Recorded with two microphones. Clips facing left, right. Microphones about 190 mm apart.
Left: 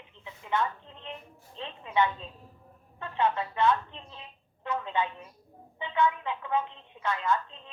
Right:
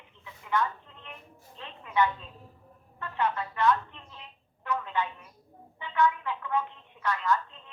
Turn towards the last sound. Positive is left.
turn(degrees=25)  # may be behind; listen again after turning